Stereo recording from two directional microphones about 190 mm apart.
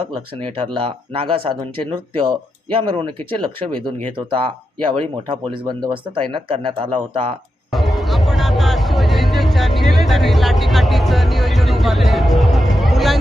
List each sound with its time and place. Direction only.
0.5 s speech: 25° right (ahead or behind)
3.7 s speech: 5° left (ahead or behind)
4.9 s speech: 25° right (ahead or behind)
7.7 s music: centre (ahead or behind)